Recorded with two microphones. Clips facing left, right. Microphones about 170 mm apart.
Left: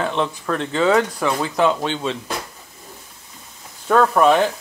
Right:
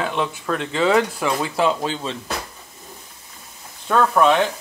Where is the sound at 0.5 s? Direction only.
30° left (ahead or behind).